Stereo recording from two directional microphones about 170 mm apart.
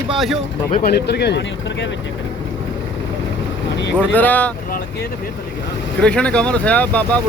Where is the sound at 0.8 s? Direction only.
70° left (ahead or behind); by 1.9 s 85° left.